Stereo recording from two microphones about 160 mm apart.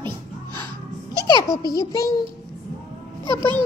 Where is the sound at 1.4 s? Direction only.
20° left (ahead or behind).